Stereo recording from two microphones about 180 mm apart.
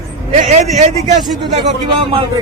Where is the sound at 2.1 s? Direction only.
30° right (ahead or behind).